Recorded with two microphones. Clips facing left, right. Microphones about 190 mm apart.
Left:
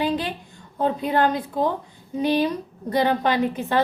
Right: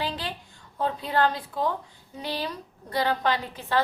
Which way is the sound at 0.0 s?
20° left (ahead or behind).